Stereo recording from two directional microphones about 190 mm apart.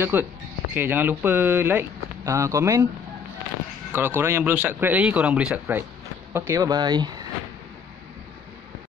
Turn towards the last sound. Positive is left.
turn(degrees=-20)  # may be behind; listen again after turning